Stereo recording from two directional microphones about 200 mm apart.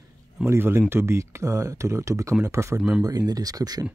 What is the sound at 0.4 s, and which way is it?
Speech, 10° right (ahead or behind).